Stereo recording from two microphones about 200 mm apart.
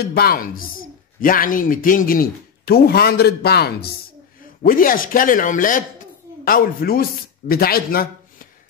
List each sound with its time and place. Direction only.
0.0 s speech: 50° left (ahead or behind)